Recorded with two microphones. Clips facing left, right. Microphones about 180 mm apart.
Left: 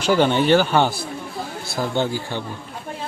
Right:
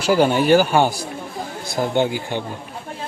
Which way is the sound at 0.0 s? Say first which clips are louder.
Right 1 dB; 5° right (ahead or behind).